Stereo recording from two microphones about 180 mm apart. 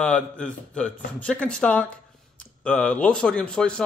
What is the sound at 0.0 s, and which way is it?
Speech, 5° left (ahead or behind).